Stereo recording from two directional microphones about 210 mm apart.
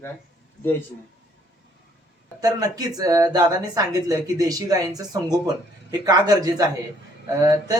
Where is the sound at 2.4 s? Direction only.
15° right (ahead or behind).